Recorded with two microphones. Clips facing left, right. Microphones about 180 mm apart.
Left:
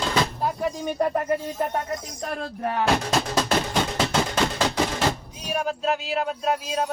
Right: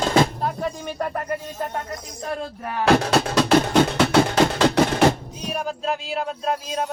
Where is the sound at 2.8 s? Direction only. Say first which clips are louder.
Right 6 dB; 65° right (ahead or behind).